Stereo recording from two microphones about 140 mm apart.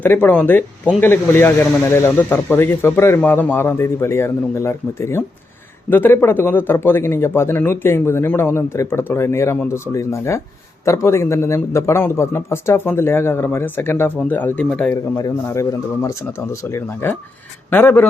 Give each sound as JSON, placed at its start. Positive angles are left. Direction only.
{"t": 0.0, "sound": "speech", "side_deg": 15}
{"t": 16.0, "sound": "speech", "side_deg": 20}